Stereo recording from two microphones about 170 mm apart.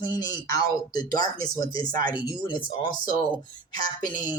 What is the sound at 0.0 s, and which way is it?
Speech, 25° left (ahead or behind).